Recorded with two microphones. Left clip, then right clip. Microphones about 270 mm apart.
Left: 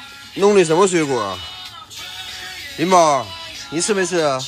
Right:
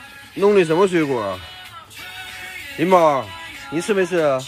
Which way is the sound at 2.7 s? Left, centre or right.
Centre.